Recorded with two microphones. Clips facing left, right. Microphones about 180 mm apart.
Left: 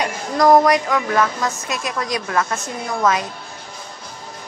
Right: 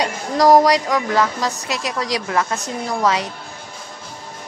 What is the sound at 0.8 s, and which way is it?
A woman's voice, 15° right (ahead or behind).